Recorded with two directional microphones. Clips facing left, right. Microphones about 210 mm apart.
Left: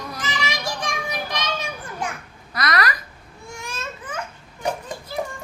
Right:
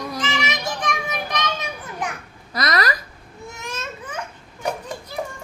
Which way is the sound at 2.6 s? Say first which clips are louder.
Right 1 dB; 40° right (ahead or behind).